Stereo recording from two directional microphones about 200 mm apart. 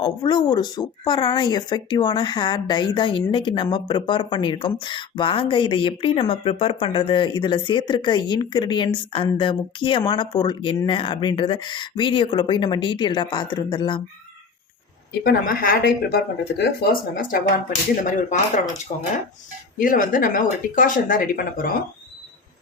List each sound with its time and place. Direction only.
0.0 s speech: 20° left (ahead or behind)
15.2 s speech: 45° left (ahead or behind)
17.7 s speech: 40° left (ahead or behind)